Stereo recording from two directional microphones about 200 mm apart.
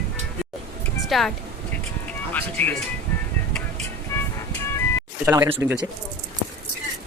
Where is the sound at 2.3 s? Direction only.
10° left (ahead or behind).